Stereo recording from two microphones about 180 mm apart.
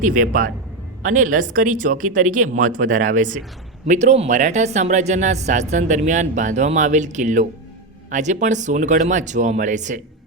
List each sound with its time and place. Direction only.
0.0 s speech: 45° right (ahead or behind)